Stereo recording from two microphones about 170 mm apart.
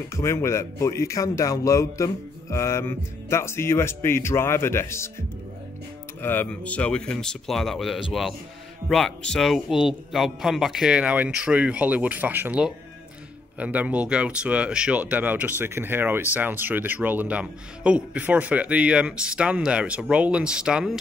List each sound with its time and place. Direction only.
0.1 s speech: 15° left (ahead or behind)
6.2 s a man's voice: 10° left (ahead or behind)